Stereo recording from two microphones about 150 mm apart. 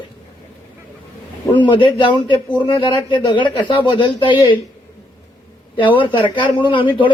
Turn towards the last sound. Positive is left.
turn(degrees=35)  # may be behind; listen again after turning